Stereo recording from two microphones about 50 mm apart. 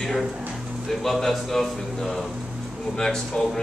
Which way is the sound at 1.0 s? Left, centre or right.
Centre.